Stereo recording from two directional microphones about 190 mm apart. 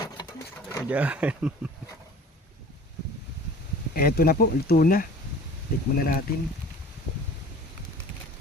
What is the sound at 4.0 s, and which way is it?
Speech, 50° left (ahead or behind).